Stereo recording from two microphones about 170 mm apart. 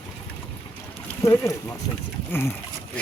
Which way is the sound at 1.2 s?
15° left (ahead or behind).